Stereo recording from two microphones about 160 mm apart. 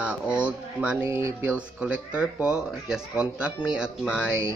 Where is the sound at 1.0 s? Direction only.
20° right (ahead or behind).